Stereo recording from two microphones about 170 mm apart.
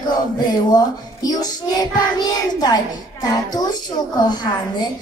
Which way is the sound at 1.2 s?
25° left (ahead or behind).